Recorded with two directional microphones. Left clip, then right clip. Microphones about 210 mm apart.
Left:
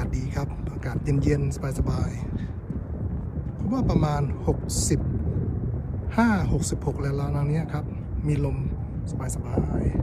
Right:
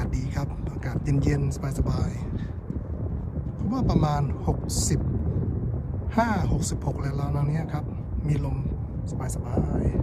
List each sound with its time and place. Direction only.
0.9 s speech: 10° right (ahead or behind)
3.6 s speech: 10° right (ahead or behind)
6.1 s a man's voice: 10° right (ahead or behind)